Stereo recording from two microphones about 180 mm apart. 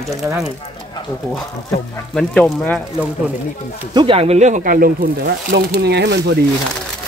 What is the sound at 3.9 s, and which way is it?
Speech, 30° right (ahead or behind).